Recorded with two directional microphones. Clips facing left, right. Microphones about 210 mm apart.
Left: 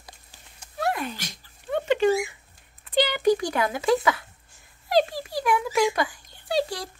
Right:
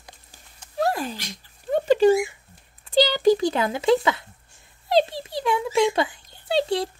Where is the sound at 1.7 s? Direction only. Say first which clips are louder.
Right 4 dB; 35° right (ahead or behind).